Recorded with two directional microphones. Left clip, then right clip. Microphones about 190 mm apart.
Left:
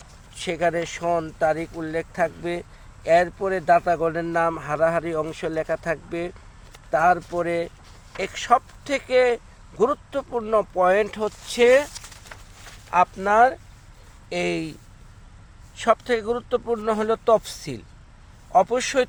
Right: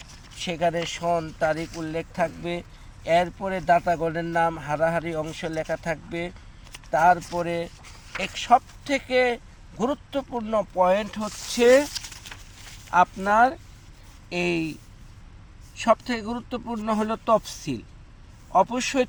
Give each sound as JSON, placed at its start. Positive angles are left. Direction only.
{"t": 0.3, "sound": "speech", "side_deg": 45}
{"t": 12.9, "sound": "speech", "side_deg": 40}
{"t": 15.7, "sound": "speech", "side_deg": 45}